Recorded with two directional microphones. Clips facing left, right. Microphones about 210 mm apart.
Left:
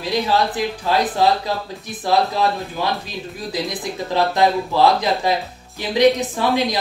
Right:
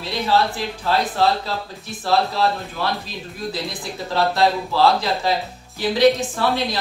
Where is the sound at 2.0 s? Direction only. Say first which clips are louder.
Left 1 dB; 15° left (ahead or behind).